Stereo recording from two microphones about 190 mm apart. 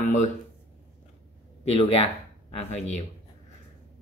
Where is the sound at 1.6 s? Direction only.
30° left (ahead or behind).